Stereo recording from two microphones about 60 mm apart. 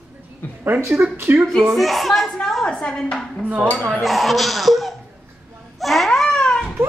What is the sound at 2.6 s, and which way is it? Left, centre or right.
Speech, centre.